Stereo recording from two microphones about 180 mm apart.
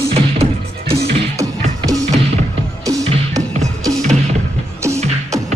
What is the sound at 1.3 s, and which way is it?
Music, 20° right (ahead or behind).